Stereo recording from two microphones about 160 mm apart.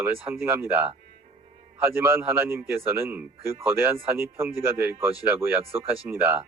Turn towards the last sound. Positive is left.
turn(degrees=-15)  # may be behind; listen again after turning